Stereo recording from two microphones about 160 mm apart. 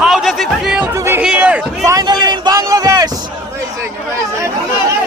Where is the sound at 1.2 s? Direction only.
5° right (ahead or behind).